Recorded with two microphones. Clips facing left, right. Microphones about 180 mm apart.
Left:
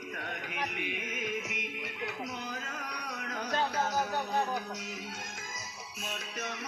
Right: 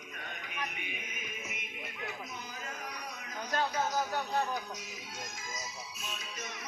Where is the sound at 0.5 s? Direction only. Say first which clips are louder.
Left 5 dB; 80° left.